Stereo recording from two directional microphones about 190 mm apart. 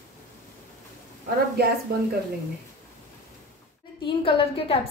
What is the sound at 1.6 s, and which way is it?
Speech, 55° right (ahead or behind).